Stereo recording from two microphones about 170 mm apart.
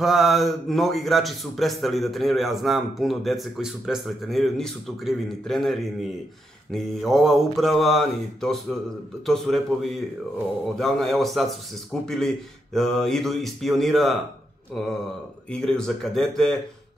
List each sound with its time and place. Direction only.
0.0 s a man's voice: centre (ahead or behind)
15.5 s a man's voice: 5° left (ahead or behind)